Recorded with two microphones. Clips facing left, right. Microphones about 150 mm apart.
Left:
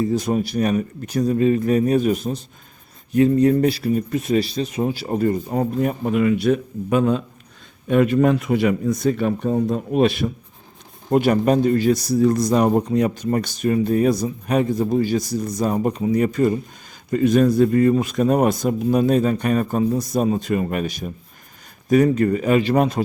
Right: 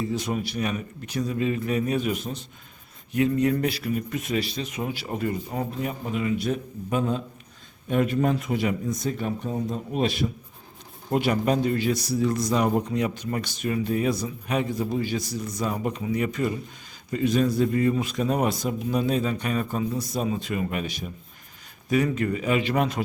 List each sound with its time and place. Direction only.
0.0 s speech: 40° left (ahead or behind); by 10.3 s 60° left (ahead or behind)
11.1 s speech: 45° left (ahead or behind)